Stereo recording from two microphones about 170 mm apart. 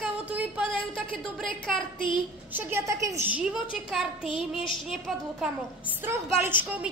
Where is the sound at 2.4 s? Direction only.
10° right (ahead or behind).